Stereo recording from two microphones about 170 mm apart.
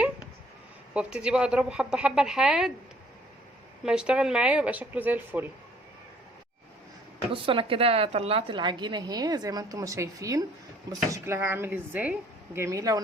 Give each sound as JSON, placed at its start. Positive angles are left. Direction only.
{"t": 0.9, "sound": "a woman's voice", "side_deg": -5}
{"t": 3.8, "sound": "speech", "side_deg": -5}
{"t": 7.4, "sound": "a woman's voice", "side_deg": -30}